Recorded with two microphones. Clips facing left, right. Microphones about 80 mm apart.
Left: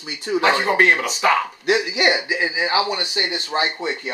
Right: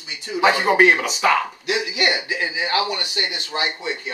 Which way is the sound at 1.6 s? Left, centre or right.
Left.